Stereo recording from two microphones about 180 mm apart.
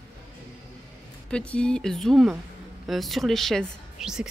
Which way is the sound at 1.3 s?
5° left (ahead or behind).